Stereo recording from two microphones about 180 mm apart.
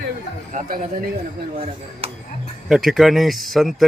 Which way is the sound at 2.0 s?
35° right (ahead or behind).